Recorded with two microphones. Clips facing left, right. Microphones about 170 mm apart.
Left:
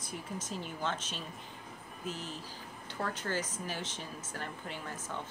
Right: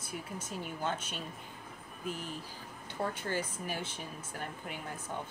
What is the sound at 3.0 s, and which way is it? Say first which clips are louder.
Speech: right 1 dB; 10° right (ahead or behind).